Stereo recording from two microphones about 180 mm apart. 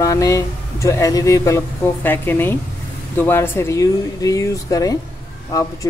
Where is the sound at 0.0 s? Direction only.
20° left (ahead or behind).